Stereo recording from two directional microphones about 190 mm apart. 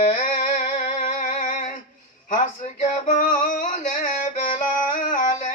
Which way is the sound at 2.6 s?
45° left (ahead or behind).